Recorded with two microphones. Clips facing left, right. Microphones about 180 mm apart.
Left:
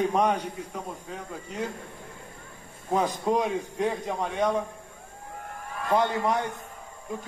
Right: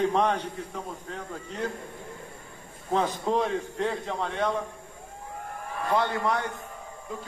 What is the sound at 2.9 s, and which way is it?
A man's voice, 10° left (ahead or behind).